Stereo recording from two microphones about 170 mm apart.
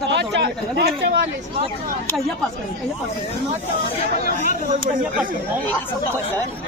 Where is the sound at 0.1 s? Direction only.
90° right.